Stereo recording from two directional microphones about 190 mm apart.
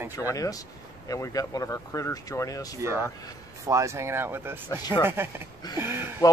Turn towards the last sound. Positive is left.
turn(degrees=-10)  # may be behind; listen again after turning